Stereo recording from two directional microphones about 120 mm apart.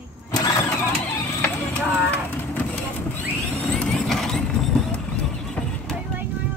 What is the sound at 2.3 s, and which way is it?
Vehicle, 15° left (ahead or behind).